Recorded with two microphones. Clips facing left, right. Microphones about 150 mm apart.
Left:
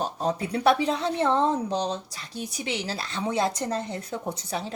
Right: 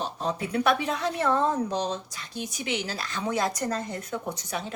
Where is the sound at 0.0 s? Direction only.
40° left (ahead or behind).